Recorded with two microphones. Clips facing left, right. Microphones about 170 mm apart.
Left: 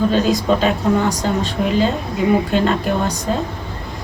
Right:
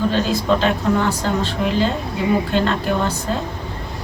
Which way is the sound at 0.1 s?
15° left (ahead or behind).